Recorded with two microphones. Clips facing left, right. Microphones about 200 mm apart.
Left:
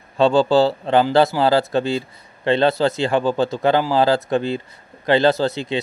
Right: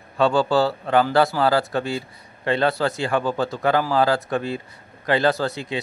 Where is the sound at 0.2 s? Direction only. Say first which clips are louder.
Left 4 dB; 25° left (ahead or behind).